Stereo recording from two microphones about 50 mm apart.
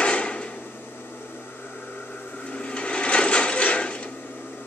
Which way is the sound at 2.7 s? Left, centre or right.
Left.